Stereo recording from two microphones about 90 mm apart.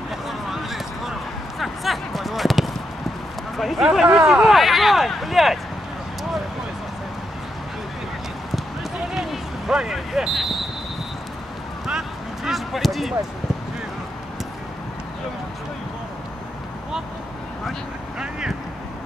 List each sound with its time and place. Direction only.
0.3 s a sound: centre (ahead or behind)
3.5 s speech: centre (ahead or behind)
9.1 s basketball bounce: 5° right (ahead or behind)
12.4 s basketball bounce: centre (ahead or behind)
18.2 s vehicle: 10° right (ahead or behind)